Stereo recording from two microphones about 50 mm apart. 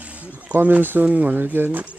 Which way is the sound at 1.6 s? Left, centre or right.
Right.